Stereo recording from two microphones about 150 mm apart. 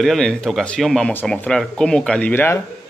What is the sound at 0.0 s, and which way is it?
Speech, 5° left (ahead or behind).